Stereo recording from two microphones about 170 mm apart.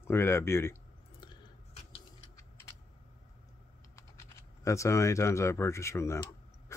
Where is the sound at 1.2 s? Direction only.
30° left (ahead or behind).